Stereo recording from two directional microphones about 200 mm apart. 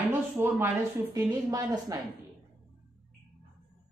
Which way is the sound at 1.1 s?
20° right (ahead or behind).